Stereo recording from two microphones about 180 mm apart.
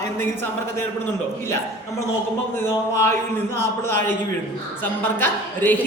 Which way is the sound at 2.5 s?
15° left (ahead or behind).